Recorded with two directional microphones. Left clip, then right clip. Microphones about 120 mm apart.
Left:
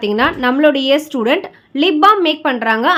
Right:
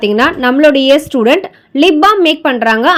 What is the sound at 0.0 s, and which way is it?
A woman's voice, 40° right (ahead or behind).